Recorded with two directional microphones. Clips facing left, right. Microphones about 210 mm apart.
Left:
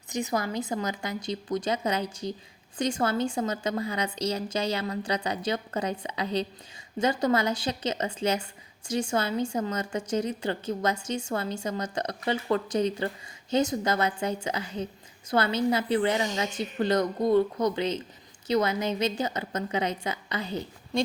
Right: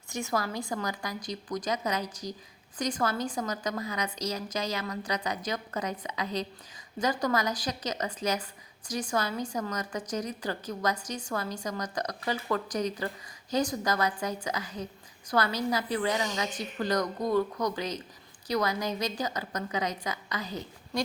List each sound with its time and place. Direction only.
0.1 s a woman's voice: 20° left (ahead or behind)